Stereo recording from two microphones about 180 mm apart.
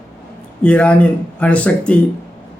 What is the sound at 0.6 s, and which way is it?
A man's voice, 5° left (ahead or behind).